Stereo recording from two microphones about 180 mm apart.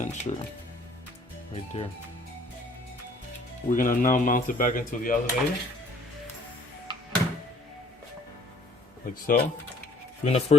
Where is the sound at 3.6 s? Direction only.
45° left (ahead or behind).